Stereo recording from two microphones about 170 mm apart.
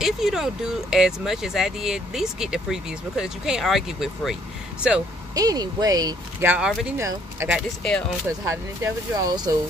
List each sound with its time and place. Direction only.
0.0 s speech: centre (ahead or behind)
5.3 s speech: 20° right (ahead or behind)
6.4 s speech: 10° right (ahead or behind)